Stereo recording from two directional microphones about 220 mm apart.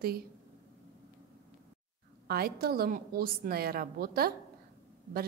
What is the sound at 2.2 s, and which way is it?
A woman's voice, 45° right (ahead or behind).